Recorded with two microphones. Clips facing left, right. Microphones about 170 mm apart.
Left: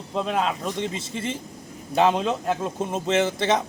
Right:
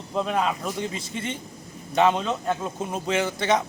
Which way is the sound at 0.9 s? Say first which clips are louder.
Left 2 dB; 30° left (ahead or behind).